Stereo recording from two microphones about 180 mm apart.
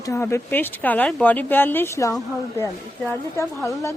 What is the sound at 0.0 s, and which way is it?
Speech, 15° left (ahead or behind).